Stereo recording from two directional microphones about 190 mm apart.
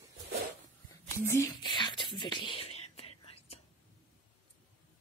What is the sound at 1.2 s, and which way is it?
Speech, 15° left (ahead or behind).